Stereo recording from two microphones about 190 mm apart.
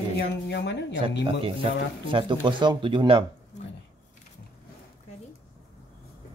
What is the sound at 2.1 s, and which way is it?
Speech, 25° right (ahead or behind).